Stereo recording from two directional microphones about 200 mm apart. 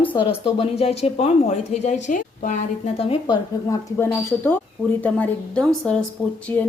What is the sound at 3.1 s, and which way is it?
Speech, 20° left (ahead or behind).